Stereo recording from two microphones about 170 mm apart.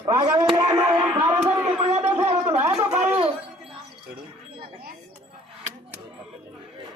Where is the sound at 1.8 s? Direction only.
40° right (ahead or behind).